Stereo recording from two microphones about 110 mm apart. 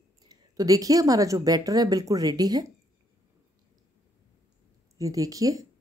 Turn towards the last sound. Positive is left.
turn(degrees=-30)  # may be behind; listen again after turning